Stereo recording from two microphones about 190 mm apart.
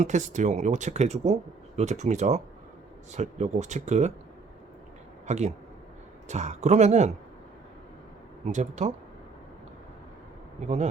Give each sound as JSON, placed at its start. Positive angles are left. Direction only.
{"t": 0.0, "sound": "speech", "side_deg": -40}
{"t": 5.2, "sound": "speech", "side_deg": -35}
{"t": 8.4, "sound": "speech", "side_deg": -40}